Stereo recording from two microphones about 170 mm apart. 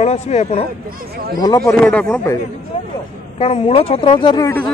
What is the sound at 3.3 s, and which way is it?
Speech, 35° left (ahead or behind).